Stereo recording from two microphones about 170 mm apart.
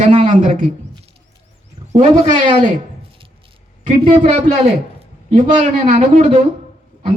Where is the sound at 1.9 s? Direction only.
45° right (ahead or behind).